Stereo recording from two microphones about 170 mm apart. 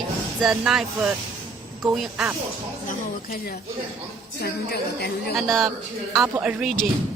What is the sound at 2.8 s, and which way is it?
Speech, 60° left (ahead or behind).